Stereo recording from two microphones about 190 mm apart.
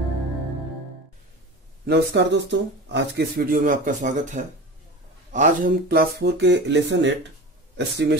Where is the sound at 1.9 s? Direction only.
65° right (ahead or behind).